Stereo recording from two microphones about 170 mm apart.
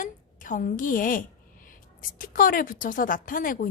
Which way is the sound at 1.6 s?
55° left (ahead or behind).